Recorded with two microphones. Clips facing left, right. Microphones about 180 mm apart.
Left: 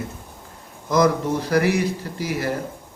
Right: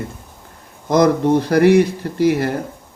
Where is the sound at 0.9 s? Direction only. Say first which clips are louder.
Right 5 dB; 60° right (ahead or behind).